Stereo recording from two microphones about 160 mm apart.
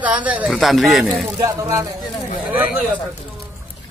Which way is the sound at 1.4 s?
20° right (ahead or behind).